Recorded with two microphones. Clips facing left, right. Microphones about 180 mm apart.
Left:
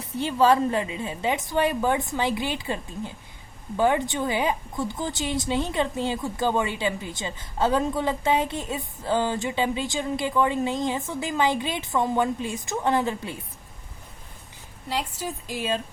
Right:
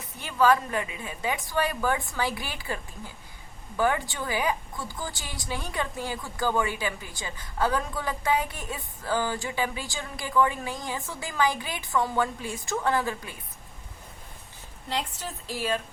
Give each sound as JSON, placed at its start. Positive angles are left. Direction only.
{"t": 0.2, "sound": "a woman's voice", "side_deg": 25}
{"t": 14.8, "sound": "a woman's voice", "side_deg": 10}